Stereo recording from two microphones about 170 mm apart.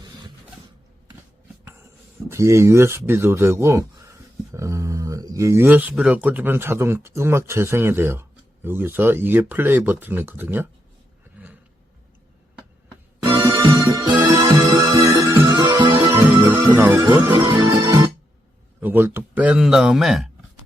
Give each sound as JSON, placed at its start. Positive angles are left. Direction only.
{"t": 2.3, "sound": "speech", "side_deg": -15}
{"t": 13.4, "sound": "music", "side_deg": -20}
{"t": 16.0, "sound": "music", "side_deg": -15}
{"t": 17.3, "sound": "music", "side_deg": -25}
{"t": 18.8, "sound": "speech", "side_deg": -10}